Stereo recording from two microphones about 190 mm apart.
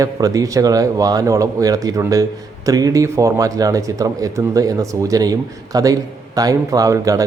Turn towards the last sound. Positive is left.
turn(degrees=-15)  # may be behind; listen again after turning